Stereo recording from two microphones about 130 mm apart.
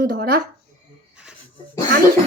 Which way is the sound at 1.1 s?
5° right (ahead or behind).